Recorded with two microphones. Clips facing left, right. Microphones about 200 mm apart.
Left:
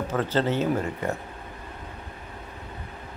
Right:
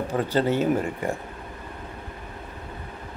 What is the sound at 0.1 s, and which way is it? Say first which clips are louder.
A man's voice: right 2 dB; 15° right (ahead or behind).